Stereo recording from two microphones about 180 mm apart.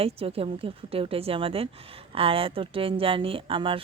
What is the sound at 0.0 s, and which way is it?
A woman's voice, 30° right (ahead or behind).